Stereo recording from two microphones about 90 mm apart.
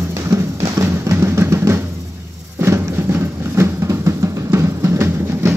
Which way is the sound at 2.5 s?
30° right (ahead or behind).